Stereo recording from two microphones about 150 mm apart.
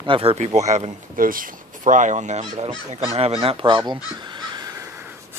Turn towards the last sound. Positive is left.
turn(degrees=-25)  # may be behind; listen again after turning